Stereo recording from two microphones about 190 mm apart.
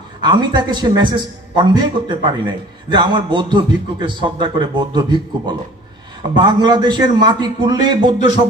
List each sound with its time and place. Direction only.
0.2 s a man's voice: 25° right (ahead or behind)